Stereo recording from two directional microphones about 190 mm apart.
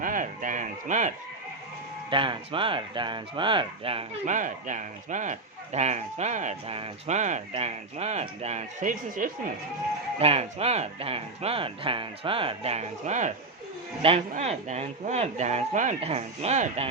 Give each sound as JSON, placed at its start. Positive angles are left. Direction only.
{"t": 0.0, "sound": "a sound", "side_deg": -45}
{"t": 2.0, "sound": "speech", "side_deg": -25}
{"t": 10.2, "sound": "speech", "side_deg": -30}